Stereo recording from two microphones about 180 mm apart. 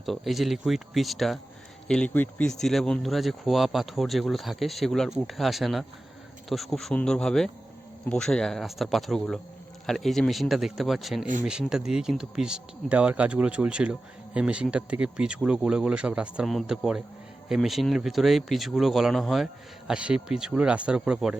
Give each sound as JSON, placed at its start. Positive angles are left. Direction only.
{"t": 0.0, "sound": "speech", "side_deg": 0}